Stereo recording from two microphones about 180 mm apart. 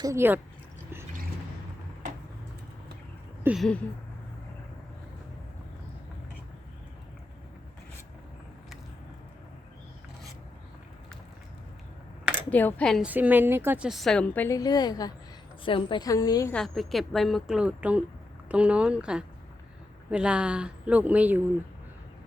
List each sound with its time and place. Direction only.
0.0 s speech: 15° right (ahead or behind)
3.4 s speech: centre (ahead or behind)
12.5 s speech: 10° left (ahead or behind)
13.1 s a woman's voice: 10° right (ahead or behind); by 16.5 s 20° left (ahead or behind)
16.5 s a woman's voice: centre (ahead or behind)